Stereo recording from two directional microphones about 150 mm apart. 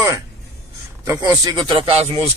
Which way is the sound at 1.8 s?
40° right (ahead or behind).